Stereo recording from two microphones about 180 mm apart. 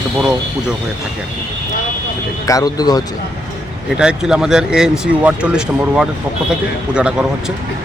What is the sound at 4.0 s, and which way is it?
Speech, 5° right (ahead or behind).